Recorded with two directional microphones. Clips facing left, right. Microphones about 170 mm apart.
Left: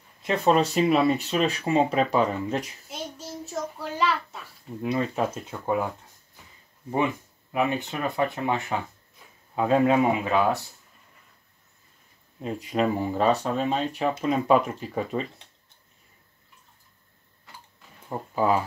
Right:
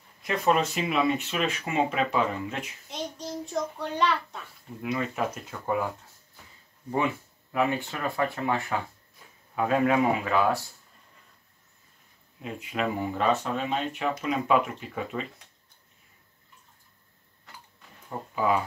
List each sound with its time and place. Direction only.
0.2 s speech: 30° left (ahead or behind)
2.9 s a child's voice: 5° left (ahead or behind)
4.8 s speech: 30° left (ahead or behind)
7.5 s speech: 20° left (ahead or behind)
12.4 s speech: 35° left (ahead or behind)
18.3 s speech: 35° left (ahead or behind)